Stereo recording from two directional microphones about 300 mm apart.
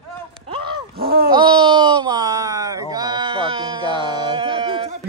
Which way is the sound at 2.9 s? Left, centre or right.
Centre.